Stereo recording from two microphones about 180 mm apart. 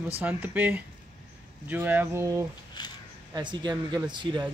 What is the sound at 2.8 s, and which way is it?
Speech, 25° left (ahead or behind).